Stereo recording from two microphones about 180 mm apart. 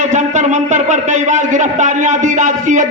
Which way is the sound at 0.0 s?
40° right (ahead or behind).